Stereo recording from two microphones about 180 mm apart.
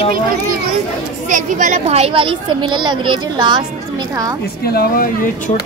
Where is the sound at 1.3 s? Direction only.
45° right (ahead or behind); by 3.6 s 25° right (ahead or behind).